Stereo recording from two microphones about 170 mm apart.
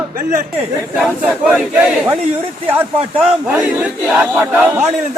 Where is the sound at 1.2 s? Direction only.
5° right (ahead or behind).